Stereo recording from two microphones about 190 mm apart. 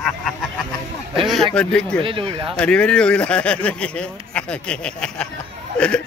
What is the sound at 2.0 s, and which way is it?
Speech, 30° right (ahead or behind).